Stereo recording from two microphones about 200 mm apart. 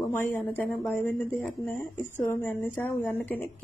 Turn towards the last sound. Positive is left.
turn(degrees=10)  # may be behind; listen again after turning